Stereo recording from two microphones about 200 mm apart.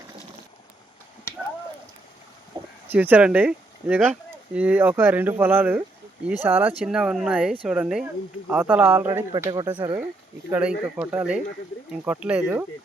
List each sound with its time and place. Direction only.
2.8 s speech: 10° right (ahead or behind)
9.5 s speech: 25° right (ahead or behind)
10.5 s speech: 10° right (ahead or behind)